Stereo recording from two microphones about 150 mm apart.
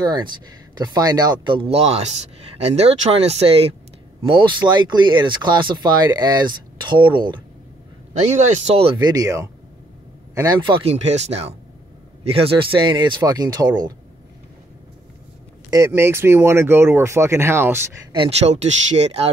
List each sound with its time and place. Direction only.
0.7 s speech: 25° right (ahead or behind)
8.1 s speech: 45° right (ahead or behind)
8.9 s speech: 25° right (ahead or behind)
15.7 s speech: 20° right (ahead or behind)
18.1 s speech: 35° right (ahead or behind)
18.5 s speech: 50° right (ahead or behind)